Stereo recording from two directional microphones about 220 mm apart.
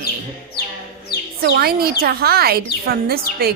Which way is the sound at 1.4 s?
45° right (ahead or behind).